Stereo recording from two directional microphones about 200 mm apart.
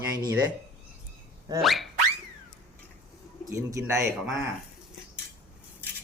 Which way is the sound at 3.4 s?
15° right (ahead or behind).